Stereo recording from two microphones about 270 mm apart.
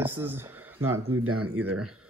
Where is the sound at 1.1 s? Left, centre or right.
Right.